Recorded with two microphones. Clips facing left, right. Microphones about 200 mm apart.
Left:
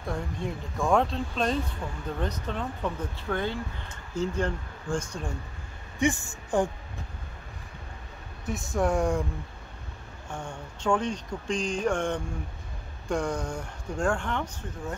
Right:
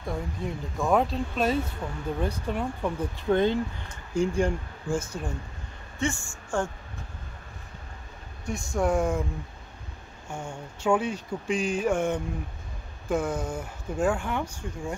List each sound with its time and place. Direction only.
0.0 s speech: centre (ahead or behind)
5.9 s a woman's voice: 15° left (ahead or behind)
8.5 s speech: centre (ahead or behind)
10.3 s speech: 10° right (ahead or behind)